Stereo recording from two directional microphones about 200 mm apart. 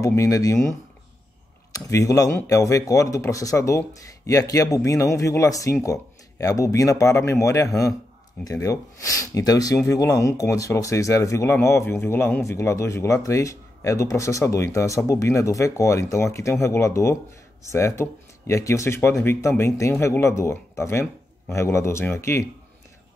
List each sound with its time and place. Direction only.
0.0 s speech: 15° left (ahead or behind)
1.9 s speech: 15° left (ahead or behind)